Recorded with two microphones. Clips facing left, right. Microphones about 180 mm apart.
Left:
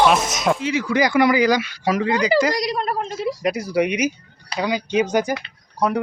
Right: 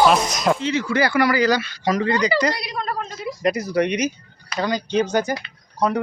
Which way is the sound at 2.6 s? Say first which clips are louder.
Left 6 dB; 35° left (ahead or behind).